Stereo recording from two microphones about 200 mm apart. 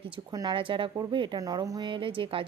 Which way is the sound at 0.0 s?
20° right (ahead or behind).